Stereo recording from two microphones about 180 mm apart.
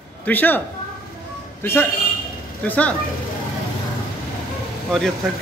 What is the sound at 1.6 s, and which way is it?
A man's voice, 15° left (ahead or behind).